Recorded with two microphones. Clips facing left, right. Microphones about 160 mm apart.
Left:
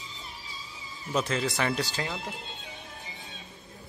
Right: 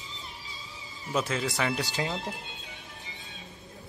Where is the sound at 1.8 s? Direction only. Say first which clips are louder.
Right 2 dB; 20° right (ahead or behind).